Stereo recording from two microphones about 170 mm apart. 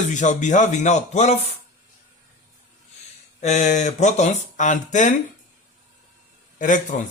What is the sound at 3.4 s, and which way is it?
Speech, 40° left (ahead or behind).